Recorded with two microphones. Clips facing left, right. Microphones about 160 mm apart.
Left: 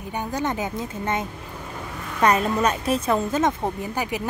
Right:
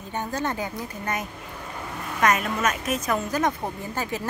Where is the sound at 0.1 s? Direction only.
15° left (ahead or behind).